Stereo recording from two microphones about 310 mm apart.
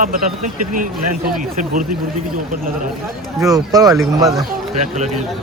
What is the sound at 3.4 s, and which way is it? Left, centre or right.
Speech, centre.